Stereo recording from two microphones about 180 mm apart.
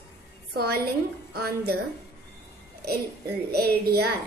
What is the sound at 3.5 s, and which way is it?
Speech, 60° right (ahead or behind).